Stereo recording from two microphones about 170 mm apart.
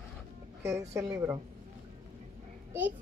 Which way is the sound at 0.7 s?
15° right (ahead or behind).